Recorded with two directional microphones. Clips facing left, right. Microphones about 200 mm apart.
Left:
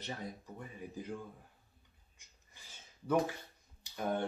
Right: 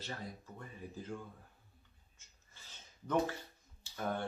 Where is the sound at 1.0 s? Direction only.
15° left (ahead or behind).